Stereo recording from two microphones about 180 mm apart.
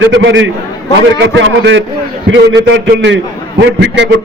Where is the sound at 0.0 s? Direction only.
80° right.